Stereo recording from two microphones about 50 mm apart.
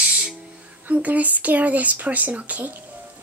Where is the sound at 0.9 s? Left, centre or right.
Right.